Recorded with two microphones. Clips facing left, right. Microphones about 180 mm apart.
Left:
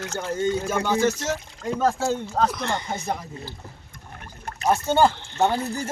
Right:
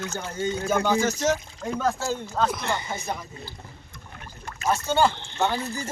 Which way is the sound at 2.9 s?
55° left (ahead or behind).